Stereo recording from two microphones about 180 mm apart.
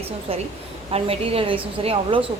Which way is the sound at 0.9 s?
30° right (ahead or behind).